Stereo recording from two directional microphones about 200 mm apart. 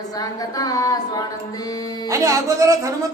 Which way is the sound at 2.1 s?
15° right (ahead or behind).